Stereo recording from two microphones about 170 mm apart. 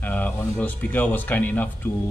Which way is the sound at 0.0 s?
10° left (ahead or behind).